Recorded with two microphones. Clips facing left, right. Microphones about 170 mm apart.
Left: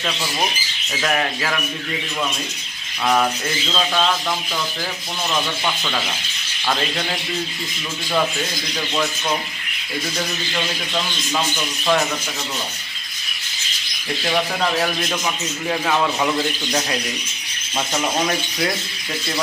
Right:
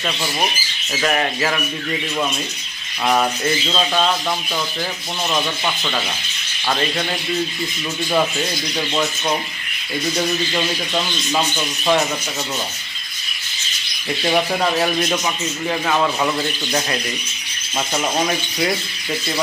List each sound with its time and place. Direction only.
1.0 s bird: 5° right (ahead or behind)
3.1 s bird: 10° right (ahead or behind)
11.3 s bird: 15° right (ahead or behind)
14.2 s bird: 10° right (ahead or behind)
15.7 s a man's voice: centre (ahead or behind)
18.2 s a man's voice: 5° right (ahead or behind)